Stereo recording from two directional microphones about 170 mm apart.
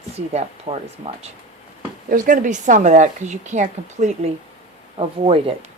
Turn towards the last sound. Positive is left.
turn(degrees=-35)  # may be behind; listen again after turning